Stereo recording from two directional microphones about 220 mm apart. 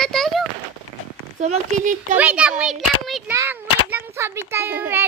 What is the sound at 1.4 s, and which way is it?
Speech, 30° right (ahead or behind).